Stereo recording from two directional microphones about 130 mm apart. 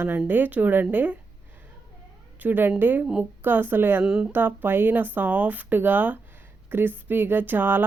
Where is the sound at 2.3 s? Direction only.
15° right (ahead or behind).